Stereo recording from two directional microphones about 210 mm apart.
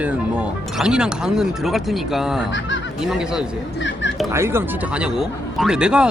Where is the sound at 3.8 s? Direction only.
60° left (ahead or behind).